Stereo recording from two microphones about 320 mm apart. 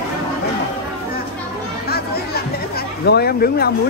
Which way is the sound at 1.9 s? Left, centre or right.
Left.